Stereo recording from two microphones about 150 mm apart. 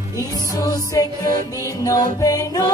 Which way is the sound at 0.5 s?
25° left (ahead or behind).